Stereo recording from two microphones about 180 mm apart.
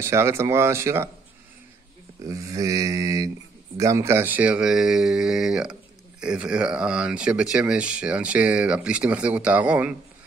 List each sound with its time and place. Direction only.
0.0 s speech: 15° right (ahead or behind)
2.2 s speech: 20° right (ahead or behind)